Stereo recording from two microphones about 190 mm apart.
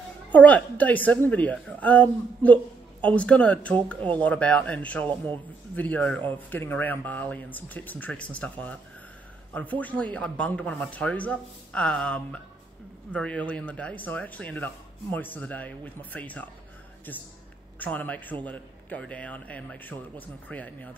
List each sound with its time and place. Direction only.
0.3 s a woman's voice: 5° left (ahead or behind)
17.7 s a woman's voice: 10° left (ahead or behind)